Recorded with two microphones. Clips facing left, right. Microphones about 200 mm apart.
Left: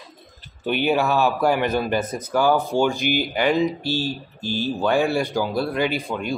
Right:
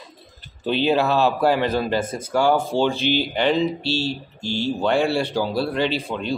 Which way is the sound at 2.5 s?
15° left (ahead or behind).